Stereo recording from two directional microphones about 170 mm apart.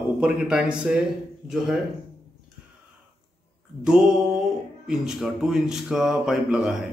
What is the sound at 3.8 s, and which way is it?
Speech, 5° right (ahead or behind).